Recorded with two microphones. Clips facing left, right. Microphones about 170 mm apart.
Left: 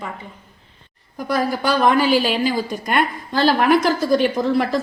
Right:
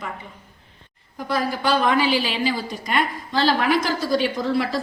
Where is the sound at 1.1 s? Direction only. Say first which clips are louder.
Left 3 dB; 45° left (ahead or behind).